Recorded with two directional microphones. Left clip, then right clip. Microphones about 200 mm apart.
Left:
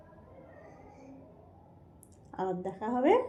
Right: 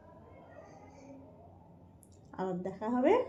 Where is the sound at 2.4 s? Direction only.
20° left (ahead or behind).